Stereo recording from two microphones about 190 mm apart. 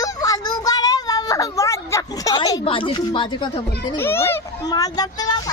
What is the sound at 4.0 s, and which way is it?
A child's voice, 10° left (ahead or behind).